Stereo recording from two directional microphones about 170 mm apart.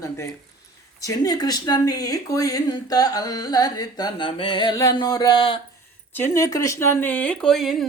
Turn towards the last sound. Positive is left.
turn(degrees=0)  # may be behind; listen again after turning